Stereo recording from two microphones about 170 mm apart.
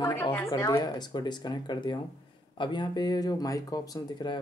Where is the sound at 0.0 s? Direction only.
15° left (ahead or behind).